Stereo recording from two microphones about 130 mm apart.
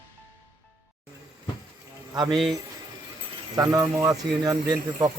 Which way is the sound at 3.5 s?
25° right (ahead or behind).